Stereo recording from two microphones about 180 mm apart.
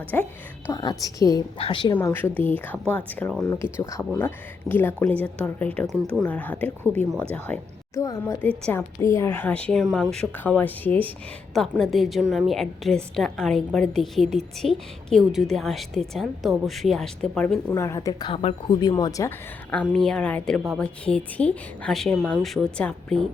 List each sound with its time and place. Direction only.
0.1 s a woman's voice: 10° left (ahead or behind)
0.7 s speech: 20° left (ahead or behind)
1.9 s a woman's voice: 15° left (ahead or behind)
17.7 s speech: 15° left (ahead or behind)
19.9 s a woman's voice: centre (ahead or behind)